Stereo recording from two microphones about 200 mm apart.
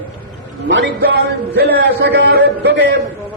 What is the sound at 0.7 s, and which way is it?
A man's voice, 60° right (ahead or behind).